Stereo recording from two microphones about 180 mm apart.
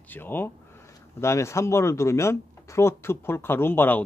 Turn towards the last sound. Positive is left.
turn(degrees=10)  # may be behind; listen again after turning